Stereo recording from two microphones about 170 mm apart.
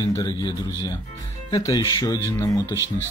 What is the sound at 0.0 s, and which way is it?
A man's voice, 20° left (ahead or behind).